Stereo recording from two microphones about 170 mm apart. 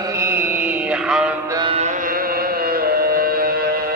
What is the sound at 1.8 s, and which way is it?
Music, 45° right (ahead or behind).